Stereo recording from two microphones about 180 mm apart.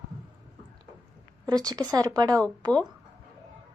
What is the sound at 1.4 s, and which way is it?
Speech, 20° right (ahead or behind).